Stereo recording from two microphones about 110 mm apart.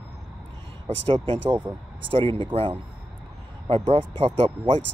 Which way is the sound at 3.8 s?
75° right (ahead or behind).